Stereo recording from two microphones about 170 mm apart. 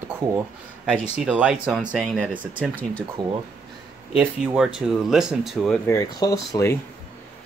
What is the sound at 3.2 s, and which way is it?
Speech, 25° right (ahead or behind).